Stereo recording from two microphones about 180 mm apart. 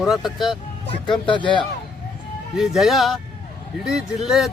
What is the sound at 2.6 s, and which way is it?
Speech, centre (ahead or behind).